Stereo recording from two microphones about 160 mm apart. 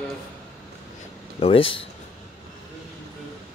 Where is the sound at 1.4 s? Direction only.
35° left (ahead or behind).